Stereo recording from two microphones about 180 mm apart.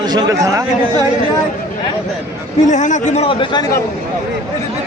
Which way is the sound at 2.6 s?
40° left (ahead or behind).